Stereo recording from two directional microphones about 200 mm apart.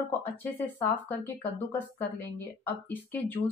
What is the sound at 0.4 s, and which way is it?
Speech, 10° left (ahead or behind).